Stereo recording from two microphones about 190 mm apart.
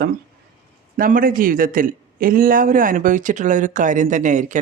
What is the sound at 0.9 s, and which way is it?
A man's voice, 45° right (ahead or behind).